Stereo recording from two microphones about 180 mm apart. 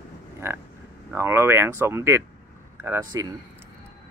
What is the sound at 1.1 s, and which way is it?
Speech, 15° right (ahead or behind).